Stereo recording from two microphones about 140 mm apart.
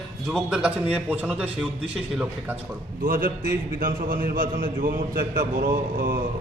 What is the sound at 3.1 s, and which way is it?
A man's voice, 90° right.